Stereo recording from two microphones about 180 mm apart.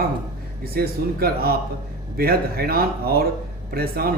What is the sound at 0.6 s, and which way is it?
A man's voice, 60° right (ahead or behind).